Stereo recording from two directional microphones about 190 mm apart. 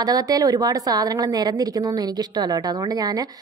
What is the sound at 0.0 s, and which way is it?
A woman's voice, 20° right (ahead or behind).